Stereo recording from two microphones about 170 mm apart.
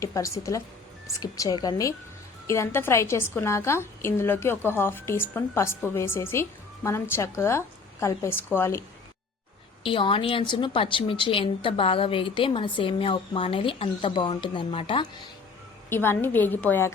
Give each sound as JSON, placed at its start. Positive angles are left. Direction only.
{"t": 0.0, "sound": "a woman's voice", "side_deg": 20}
{"t": 9.8, "sound": "a woman's voice", "side_deg": 30}
{"t": 15.9, "sound": "a woman's voice", "side_deg": 15}